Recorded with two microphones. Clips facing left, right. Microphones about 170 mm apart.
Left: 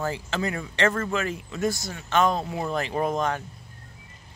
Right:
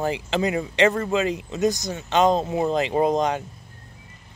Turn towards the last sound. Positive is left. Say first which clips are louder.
# right 5 dB
turn(degrees=-20)  # may be behind; listen again after turning